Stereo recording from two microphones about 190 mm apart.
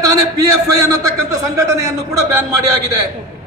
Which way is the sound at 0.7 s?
20° right (ahead or behind).